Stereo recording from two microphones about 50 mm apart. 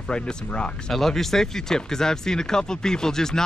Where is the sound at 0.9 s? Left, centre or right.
Centre.